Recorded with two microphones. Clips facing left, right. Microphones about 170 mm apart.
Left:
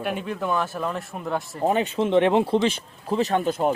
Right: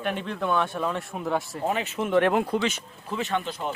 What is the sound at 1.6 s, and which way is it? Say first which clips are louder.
Speech: left 7 dB; 30° left (ahead or behind).